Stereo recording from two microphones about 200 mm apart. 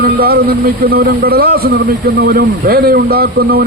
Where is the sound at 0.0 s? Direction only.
50° right (ahead or behind).